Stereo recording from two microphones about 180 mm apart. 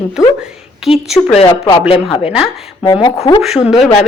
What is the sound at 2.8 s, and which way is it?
Speech, 25° left (ahead or behind).